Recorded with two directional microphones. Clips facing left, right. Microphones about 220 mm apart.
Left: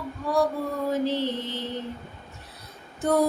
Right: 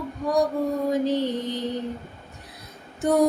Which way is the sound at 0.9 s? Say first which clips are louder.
Even; 15° right (ahead or behind).